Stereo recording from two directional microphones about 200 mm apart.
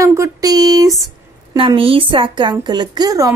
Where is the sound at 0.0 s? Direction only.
15° right (ahead or behind).